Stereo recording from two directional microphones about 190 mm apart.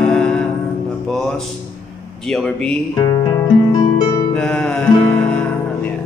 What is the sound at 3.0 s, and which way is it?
Music, 20° left (ahead or behind).